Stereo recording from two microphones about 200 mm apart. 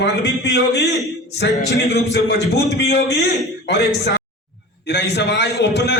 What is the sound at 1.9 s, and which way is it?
A man's voice, 55° left (ahead or behind).